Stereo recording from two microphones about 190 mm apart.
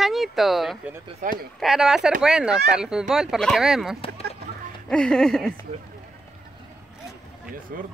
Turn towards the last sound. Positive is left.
turn(degrees=-50)  # may be behind; listen again after turning